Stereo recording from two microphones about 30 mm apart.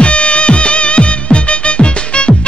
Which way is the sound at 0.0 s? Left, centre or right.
Left.